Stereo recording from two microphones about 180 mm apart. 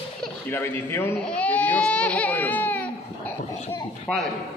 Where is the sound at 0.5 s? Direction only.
15° left (ahead or behind).